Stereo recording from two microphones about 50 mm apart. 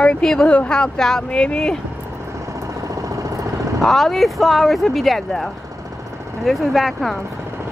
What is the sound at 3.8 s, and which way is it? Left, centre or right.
Speech, centre.